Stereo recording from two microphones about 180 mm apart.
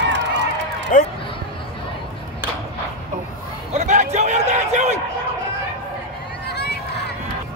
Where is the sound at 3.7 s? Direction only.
40° right (ahead or behind).